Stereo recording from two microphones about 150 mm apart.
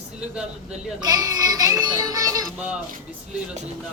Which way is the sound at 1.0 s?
25° right (ahead or behind).